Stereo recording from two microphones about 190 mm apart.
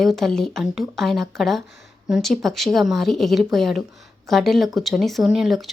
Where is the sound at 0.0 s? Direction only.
Centre (ahead or behind).